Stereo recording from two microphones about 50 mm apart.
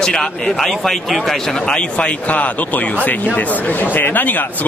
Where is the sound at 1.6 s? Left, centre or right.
Left.